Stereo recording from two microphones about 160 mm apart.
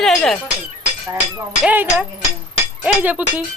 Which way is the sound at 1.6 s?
10° right (ahead or behind).